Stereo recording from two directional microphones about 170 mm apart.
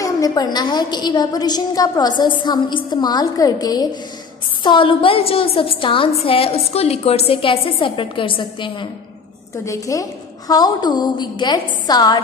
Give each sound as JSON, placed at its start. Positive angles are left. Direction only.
{"t": 0.0, "sound": "a woman's voice", "side_deg": 20}
{"t": 9.7, "sound": "a woman's voice", "side_deg": 20}